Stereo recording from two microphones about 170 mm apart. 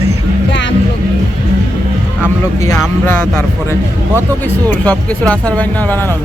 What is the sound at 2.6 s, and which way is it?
Speech, 15° left (ahead or behind).